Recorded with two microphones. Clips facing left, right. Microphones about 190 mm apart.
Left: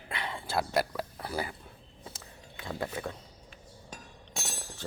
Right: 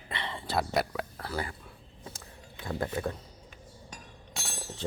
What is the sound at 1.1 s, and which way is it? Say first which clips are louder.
Speech: left 2 dB; 15° left (ahead or behind).